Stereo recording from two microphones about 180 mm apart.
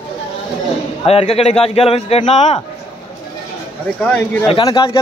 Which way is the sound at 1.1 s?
35° left (ahead or behind).